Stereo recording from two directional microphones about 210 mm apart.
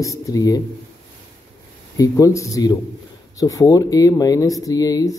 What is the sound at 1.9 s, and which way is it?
Speech, 15° left (ahead or behind).